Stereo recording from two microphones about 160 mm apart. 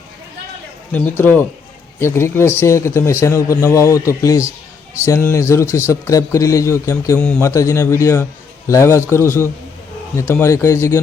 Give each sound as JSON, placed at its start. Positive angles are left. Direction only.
{"t": 1.2, "sound": "a man's voice", "side_deg": 10}